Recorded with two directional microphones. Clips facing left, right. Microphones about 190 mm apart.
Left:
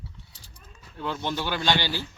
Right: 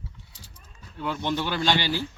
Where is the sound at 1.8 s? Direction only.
15° right (ahead or behind).